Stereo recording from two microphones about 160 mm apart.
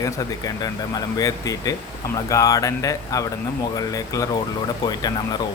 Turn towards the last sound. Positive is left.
turn(degrees=25)  # may be behind; listen again after turning